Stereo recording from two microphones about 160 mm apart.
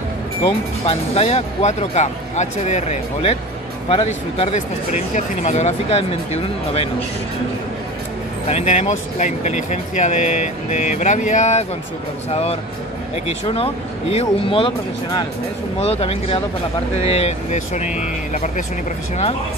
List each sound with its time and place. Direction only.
0.5 s speech: 35° left (ahead or behind)
8.5 s speech: 45° left (ahead or behind)
17.8 s speech: 5° right (ahead or behind)